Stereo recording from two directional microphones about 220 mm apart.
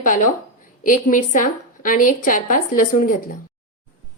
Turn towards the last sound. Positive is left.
turn(degrees=40)  # may be behind; listen again after turning